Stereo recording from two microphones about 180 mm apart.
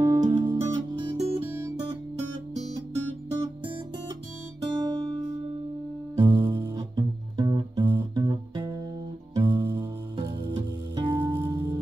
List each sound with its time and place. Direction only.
0.0 s music: 20° right (ahead or behind)
1.4 s guitar: 15° right (ahead or behind)
4.6 s guitar: 25° right (ahead or behind)
6.1 s music: 25° right (ahead or behind)